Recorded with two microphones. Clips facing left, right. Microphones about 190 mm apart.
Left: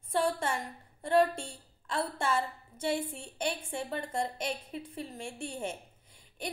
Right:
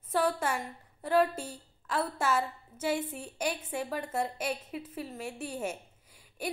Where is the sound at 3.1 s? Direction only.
25° left (ahead or behind).